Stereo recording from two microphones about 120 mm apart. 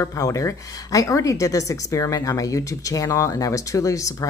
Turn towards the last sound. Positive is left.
turn(degrees=25)  # may be behind; listen again after turning